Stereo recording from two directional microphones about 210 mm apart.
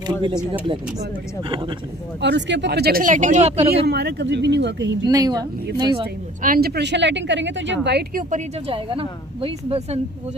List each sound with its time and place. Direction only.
0.0 s speech: 20° right (ahead or behind)
2.2 s speech: 55° right (ahead or behind); by 3.6 s 30° right (ahead or behind)
3.7 s a woman's voice: 50° right (ahead or behind)
5.0 s speech: 20° right (ahead or behind)
6.4 s a woman's voice: 45° right (ahead or behind)
8.6 s speech: 25° right (ahead or behind)